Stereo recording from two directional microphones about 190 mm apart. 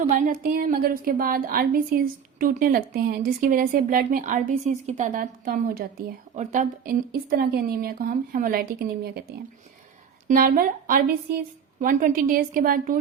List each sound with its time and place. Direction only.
0.3 s a woman's voice: 50° right (ahead or behind)
6.3 s a woman's voice: 40° right (ahead or behind)
10.2 s a woman's voice: 50° right (ahead or behind)